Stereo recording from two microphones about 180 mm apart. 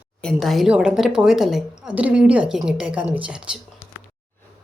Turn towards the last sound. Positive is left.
turn(degrees=-5)  # may be behind; listen again after turning